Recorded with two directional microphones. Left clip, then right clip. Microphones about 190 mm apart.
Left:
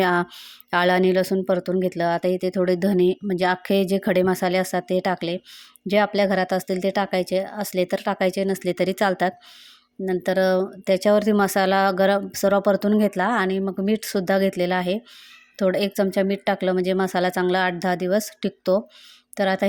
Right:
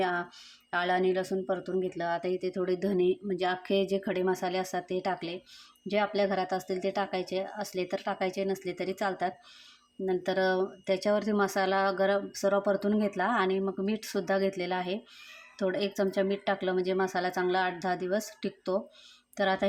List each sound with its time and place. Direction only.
0.0 s speech: 45° left (ahead or behind)